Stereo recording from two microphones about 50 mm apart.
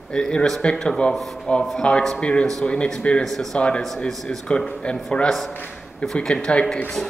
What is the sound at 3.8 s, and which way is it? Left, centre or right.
A man's voice, centre.